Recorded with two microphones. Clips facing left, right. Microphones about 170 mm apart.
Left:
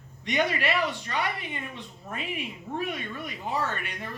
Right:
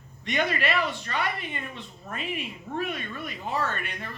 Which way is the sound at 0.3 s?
15° left (ahead or behind).